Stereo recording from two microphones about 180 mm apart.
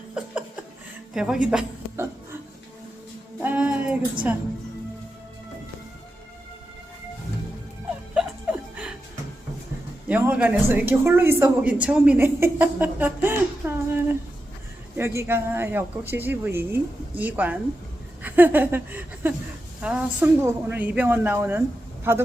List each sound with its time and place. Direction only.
0.2 s chuckle: 5° right (ahead or behind)
1.1 s a woman's voice: 5° right (ahead or behind)
3.4 s a sound: 10° right (ahead or behind)
8.1 s music: 5° right (ahead or behind)
10.1 s speech: 10° right (ahead or behind)
18.2 s a sound: 10° right (ahead or behind)
19.8 s speech: 5° right (ahead or behind)